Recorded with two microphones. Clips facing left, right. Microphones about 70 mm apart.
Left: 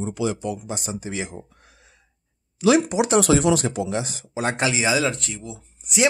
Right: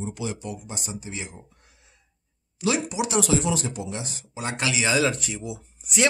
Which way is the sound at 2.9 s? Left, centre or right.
Left.